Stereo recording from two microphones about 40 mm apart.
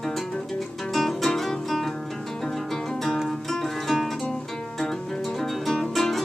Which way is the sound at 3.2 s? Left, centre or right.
Centre.